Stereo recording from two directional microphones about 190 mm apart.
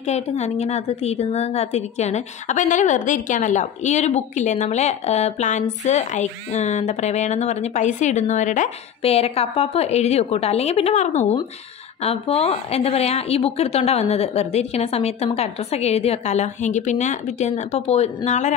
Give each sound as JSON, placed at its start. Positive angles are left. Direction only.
{"t": 0.0, "sound": "a woman's voice", "side_deg": 35}